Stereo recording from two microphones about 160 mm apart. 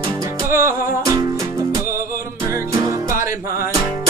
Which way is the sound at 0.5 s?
15° right (ahead or behind).